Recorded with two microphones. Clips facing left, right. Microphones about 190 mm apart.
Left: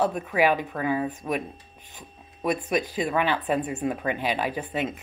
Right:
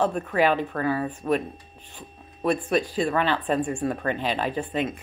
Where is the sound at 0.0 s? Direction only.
10° left (ahead or behind).